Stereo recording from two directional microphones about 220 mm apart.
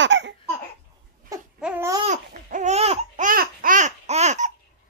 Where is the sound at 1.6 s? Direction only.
10° right (ahead or behind).